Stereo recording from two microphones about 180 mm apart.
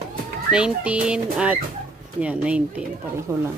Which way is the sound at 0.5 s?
5° right (ahead or behind).